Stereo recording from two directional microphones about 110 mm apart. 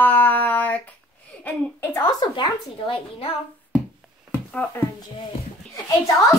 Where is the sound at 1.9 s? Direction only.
35° left (ahead or behind).